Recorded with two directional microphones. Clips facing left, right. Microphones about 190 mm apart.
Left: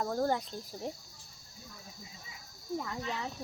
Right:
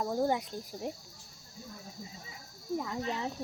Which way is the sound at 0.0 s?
10° right (ahead or behind).